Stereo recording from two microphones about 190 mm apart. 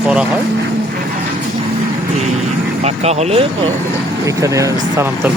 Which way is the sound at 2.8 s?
35° right (ahead or behind).